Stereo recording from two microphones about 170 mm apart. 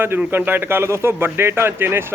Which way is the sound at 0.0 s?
15° right (ahead or behind).